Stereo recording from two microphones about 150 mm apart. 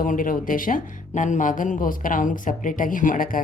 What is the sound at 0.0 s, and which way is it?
Speech, 65° left (ahead or behind).